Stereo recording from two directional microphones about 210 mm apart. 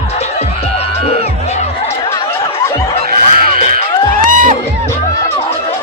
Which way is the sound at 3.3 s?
45° right (ahead or behind).